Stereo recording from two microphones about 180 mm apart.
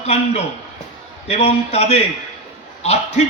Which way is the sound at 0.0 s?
35° left (ahead or behind).